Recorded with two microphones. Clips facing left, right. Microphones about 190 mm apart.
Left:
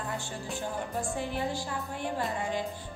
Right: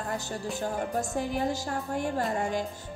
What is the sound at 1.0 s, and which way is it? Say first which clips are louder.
A woman's voice: right 2 dB; 40° right (ahead or behind).